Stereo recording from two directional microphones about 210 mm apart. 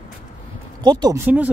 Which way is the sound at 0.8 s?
20° right (ahead or behind).